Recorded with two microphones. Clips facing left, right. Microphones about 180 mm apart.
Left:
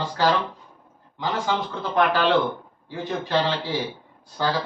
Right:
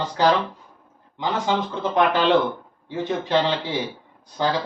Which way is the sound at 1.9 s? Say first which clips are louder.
Right 2 dB; 20° right (ahead or behind).